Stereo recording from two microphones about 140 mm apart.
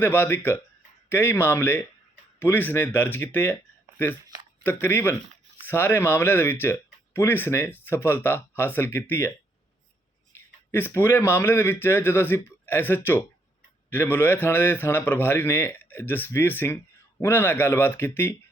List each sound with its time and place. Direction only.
0.0 s a man's voice: 15° left (ahead or behind)
10.3 s a man's voice: 15° left (ahead or behind)